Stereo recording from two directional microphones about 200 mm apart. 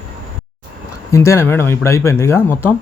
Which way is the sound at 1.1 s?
15° left (ahead or behind).